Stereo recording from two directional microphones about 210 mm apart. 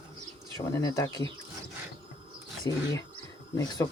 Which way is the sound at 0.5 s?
15° left (ahead or behind).